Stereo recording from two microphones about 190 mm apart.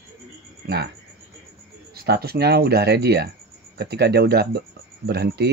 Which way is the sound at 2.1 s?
55° right (ahead or behind).